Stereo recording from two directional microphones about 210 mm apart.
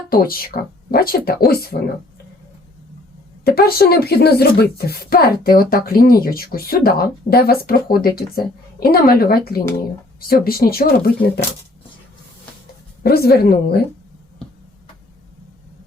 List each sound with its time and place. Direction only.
0.1 s speech: 45° left (ahead or behind)
3.4 s speech: 45° left (ahead or behind)
13.0 s speech: 45° left (ahead or behind)